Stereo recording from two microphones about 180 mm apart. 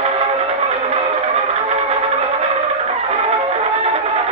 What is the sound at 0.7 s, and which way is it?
Music, 35° right (ahead or behind).